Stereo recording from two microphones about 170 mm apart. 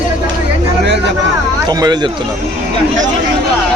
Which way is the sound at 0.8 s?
90° right.